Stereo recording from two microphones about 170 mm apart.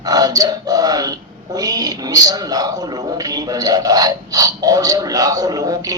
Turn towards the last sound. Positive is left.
turn(degrees=-20)  # may be behind; listen again after turning